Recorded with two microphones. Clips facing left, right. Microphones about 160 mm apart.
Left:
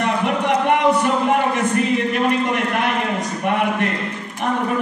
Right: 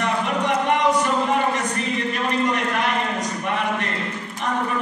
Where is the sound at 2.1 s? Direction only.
55° left (ahead or behind).